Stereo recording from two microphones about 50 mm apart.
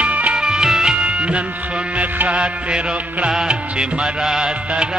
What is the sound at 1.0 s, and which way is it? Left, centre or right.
Music, right.